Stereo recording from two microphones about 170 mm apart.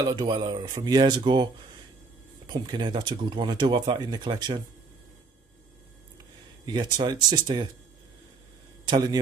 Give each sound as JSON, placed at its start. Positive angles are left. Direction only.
{"t": 0.0, "sound": "speech", "side_deg": -25}
{"t": 6.6, "sound": "speech", "side_deg": -25}
{"t": 8.8, "sound": "speech", "side_deg": -25}